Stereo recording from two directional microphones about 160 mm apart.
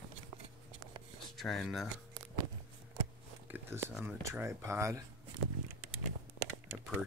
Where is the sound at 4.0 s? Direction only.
15° right (ahead or behind).